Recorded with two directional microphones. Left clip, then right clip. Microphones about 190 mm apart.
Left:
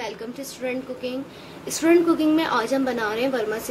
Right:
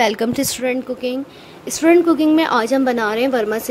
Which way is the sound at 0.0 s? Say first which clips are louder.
Right 15 dB; 50° right (ahead or behind).